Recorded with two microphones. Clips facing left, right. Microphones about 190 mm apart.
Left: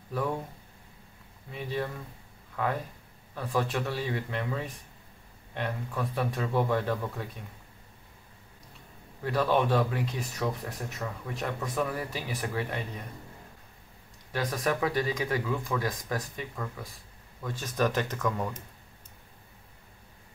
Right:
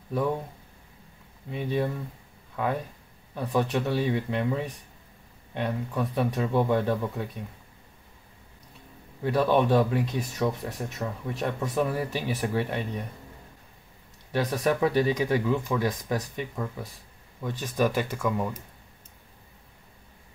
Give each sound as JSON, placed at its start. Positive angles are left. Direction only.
{"t": 1.5, "sound": "speech", "side_deg": -20}
{"t": 3.3, "sound": "speech", "side_deg": -20}
{"t": 9.2, "sound": "speech", "side_deg": -20}
{"t": 14.3, "sound": "speech", "side_deg": -25}